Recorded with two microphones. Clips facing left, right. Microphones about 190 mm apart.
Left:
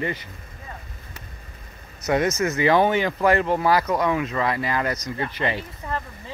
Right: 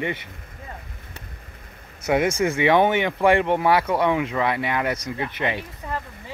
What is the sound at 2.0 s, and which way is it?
Speech, 10° right (ahead or behind).